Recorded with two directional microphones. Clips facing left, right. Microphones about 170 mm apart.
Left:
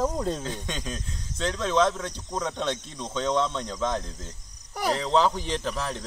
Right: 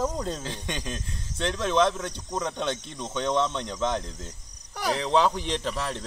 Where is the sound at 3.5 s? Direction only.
15° right (ahead or behind).